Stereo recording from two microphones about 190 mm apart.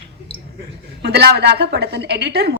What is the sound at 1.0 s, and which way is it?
A woman's voice, 60° right (ahead or behind).